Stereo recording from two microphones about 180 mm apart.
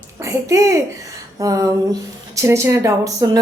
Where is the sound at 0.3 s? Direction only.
15° right (ahead or behind).